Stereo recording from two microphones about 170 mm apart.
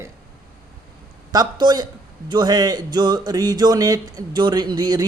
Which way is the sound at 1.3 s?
25° right (ahead or behind).